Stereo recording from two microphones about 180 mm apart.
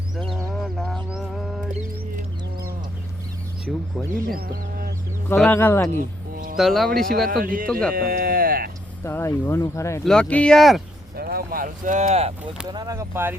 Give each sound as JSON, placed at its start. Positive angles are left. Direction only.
{"t": 0.5, "sound": "mantra", "side_deg": 0}
{"t": 3.7, "sound": "speech", "side_deg": 0}
{"t": 5.3, "sound": "speech", "side_deg": 10}
{"t": 5.9, "sound": "a sound", "side_deg": -50}
{"t": 6.6, "sound": "speech", "side_deg": 0}
{"t": 7.3, "sound": "speech", "side_deg": -50}
{"t": 7.7, "sound": "speech", "side_deg": 5}
{"t": 7.9, "sound": "a sound", "side_deg": -55}
{"t": 9.0, "sound": "speech", "side_deg": 15}
{"t": 10.0, "sound": "speech", "side_deg": 5}
{"t": 11.2, "sound": "speech", "side_deg": -55}
{"t": 12.6, "sound": "speech", "side_deg": -20}